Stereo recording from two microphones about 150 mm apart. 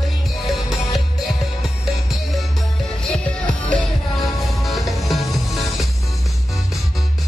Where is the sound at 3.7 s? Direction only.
Centre (ahead or behind).